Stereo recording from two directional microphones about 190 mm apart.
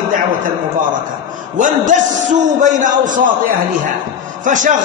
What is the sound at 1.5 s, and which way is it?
A man's voice, 40° right (ahead or behind).